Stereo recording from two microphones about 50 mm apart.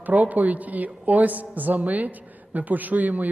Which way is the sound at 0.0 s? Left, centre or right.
Right.